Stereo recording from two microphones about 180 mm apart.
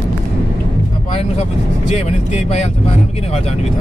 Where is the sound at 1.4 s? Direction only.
40° left (ahead or behind).